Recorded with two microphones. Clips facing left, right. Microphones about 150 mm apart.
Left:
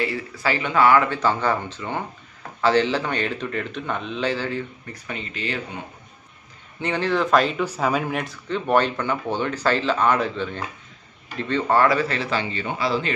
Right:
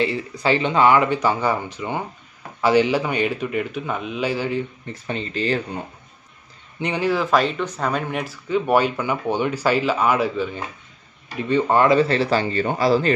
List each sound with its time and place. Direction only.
0.0 s speech: 20° right (ahead or behind)
5.0 s speech: 30° right (ahead or behind)
6.8 s speech: 15° right (ahead or behind); by 13.1 s 40° right (ahead or behind)